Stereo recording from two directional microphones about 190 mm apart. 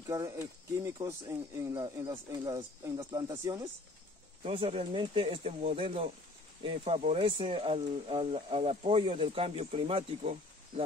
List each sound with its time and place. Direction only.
0.0 s speech: 15° right (ahead or behind)
4.4 s speech: 30° right (ahead or behind)